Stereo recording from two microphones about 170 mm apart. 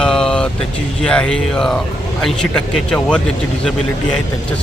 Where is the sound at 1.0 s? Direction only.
5° left (ahead or behind).